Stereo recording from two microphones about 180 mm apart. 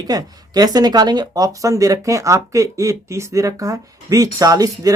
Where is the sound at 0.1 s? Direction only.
20° right (ahead or behind).